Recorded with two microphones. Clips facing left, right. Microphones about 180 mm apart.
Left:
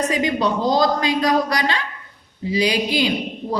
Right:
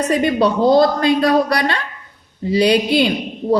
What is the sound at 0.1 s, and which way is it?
A woman's voice, 60° right (ahead or behind).